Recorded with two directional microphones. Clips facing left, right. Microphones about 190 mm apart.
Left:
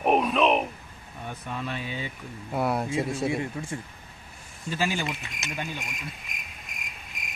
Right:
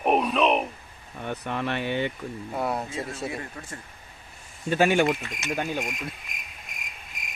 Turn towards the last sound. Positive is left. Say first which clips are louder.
# even
turn(degrees=0)  # may be behind; listen again after turning